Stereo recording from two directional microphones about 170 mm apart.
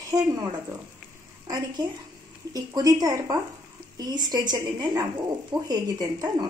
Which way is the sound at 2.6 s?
20° right (ahead or behind).